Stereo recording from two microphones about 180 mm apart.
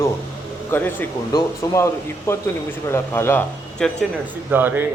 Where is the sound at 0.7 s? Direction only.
10° left (ahead or behind).